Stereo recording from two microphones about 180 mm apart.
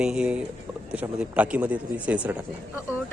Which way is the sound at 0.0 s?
5° right (ahead or behind).